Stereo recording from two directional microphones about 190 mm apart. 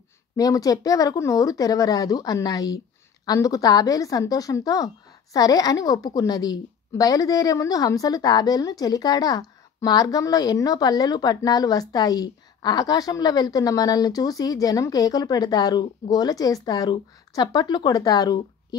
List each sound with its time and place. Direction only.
0.4 s a woman's voice: 20° left (ahead or behind)